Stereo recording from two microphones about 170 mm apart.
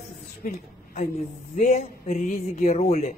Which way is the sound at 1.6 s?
45° left (ahead or behind).